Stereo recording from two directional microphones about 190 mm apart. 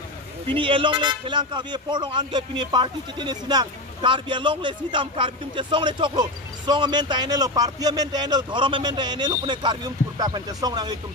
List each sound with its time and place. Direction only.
0.5 s a man's voice: 25° right (ahead or behind)